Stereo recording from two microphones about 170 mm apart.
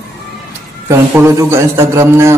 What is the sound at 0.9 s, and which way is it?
A man's voice, 15° right (ahead or behind).